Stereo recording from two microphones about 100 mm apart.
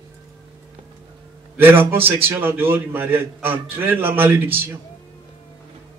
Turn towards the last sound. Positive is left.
turn(degrees=-20)  # may be behind; listen again after turning